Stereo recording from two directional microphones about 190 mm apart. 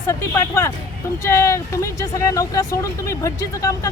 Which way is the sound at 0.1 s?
15° left (ahead or behind).